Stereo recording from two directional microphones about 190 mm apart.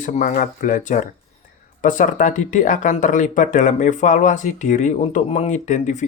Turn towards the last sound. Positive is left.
turn(degrees=40)  # may be behind; listen again after turning